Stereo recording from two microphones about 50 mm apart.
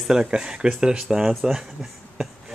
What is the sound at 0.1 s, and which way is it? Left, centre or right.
Speech, centre.